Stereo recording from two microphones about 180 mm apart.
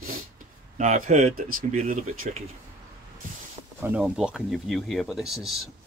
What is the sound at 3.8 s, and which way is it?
Speech, 5° right (ahead or behind).